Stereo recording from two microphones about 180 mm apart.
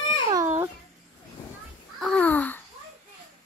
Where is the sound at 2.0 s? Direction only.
5° left (ahead or behind).